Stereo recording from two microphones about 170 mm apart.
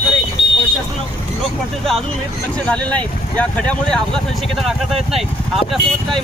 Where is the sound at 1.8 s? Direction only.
Centre (ahead or behind).